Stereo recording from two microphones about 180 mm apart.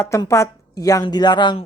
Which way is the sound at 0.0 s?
15° left (ahead or behind).